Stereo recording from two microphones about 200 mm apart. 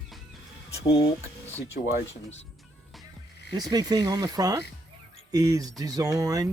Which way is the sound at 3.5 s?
20° right (ahead or behind).